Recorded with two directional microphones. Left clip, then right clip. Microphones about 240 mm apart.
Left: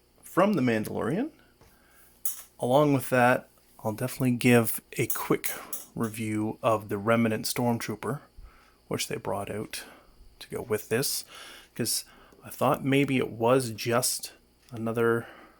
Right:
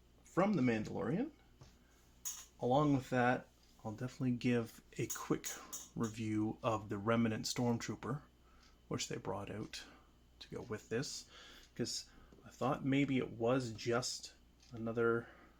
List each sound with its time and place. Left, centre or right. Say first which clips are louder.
0.3 s speech: left 10 dB; left
2.6 s speech: left 11 dB; left